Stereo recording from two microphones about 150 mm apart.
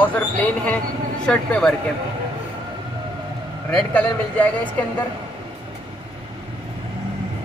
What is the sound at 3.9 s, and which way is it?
Speech, 10° left (ahead or behind).